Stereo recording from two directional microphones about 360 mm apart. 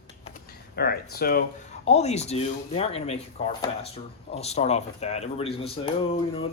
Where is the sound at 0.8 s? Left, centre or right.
Left.